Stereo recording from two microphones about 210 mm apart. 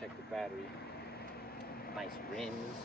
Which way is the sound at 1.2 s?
50° left (ahead or behind).